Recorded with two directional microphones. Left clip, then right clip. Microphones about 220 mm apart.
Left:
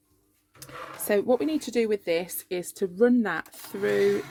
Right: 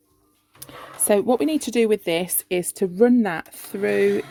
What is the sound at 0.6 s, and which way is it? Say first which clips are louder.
Speech: right 4 dB; 35° right (ahead or behind).